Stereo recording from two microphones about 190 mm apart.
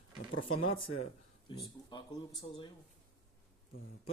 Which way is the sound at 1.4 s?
25° left (ahead or behind).